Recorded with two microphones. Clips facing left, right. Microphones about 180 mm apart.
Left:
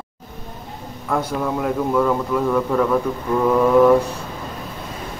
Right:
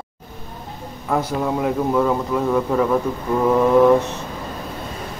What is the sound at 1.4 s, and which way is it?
Speech, 10° right (ahead or behind).